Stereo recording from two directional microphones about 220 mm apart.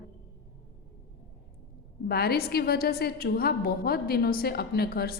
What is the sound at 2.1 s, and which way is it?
A woman's voice, 45° left (ahead or behind).